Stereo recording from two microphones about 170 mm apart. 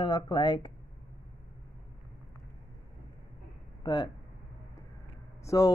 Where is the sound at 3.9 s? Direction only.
25° left (ahead or behind).